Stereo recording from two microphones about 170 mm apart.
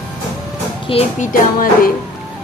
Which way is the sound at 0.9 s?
35° left (ahead or behind).